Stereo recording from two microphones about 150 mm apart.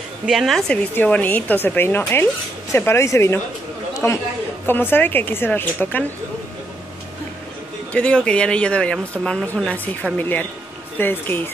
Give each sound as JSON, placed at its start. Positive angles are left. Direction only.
{"t": 0.3, "sound": "a woman's voice", "side_deg": 0}
{"t": 7.9, "sound": "speech", "side_deg": 10}